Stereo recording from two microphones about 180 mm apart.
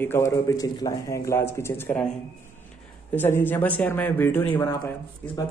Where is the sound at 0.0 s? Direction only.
15° left (ahead or behind).